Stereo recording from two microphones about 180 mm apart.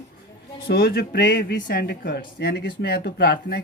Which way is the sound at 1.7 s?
65° left (ahead or behind).